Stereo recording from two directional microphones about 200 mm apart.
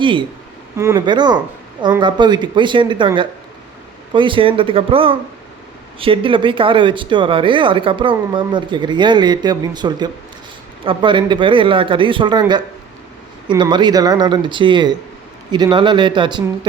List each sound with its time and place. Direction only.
0.0 s speech: 25° right (ahead or behind)
4.1 s speech: 25° right (ahead or behind)